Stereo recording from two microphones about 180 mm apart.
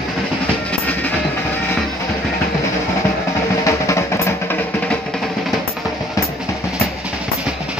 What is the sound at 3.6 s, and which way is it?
Music, 15° left (ahead or behind).